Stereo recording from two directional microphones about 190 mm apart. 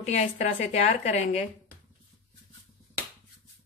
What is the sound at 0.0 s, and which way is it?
A woman's voice, 35° left (ahead or behind).